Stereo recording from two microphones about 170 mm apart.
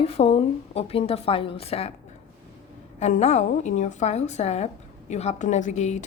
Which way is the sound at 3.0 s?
40° left (ahead or behind).